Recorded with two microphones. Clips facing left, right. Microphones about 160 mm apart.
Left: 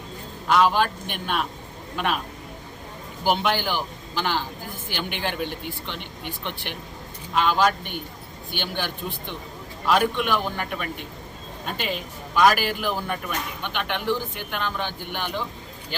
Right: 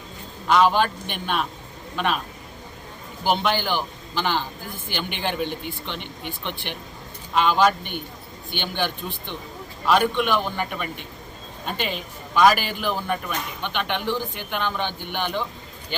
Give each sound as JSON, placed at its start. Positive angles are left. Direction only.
{"t": 0.4, "sound": "speech", "side_deg": 5}
{"t": 3.2, "sound": "a man's voice", "side_deg": 10}